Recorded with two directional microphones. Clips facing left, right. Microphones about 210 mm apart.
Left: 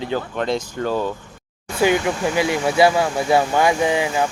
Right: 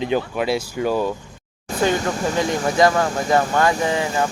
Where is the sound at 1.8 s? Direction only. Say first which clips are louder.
Left 2 dB; 10° left (ahead or behind).